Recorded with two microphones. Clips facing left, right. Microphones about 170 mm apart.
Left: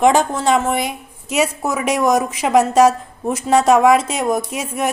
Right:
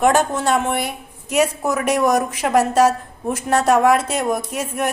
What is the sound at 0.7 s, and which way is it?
A woman's voice, 15° left (ahead or behind).